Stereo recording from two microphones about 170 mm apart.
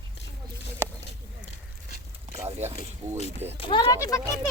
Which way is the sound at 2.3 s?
40° right (ahead or behind).